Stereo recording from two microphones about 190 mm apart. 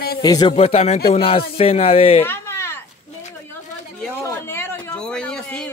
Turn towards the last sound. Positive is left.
turn(degrees=5)  # may be behind; listen again after turning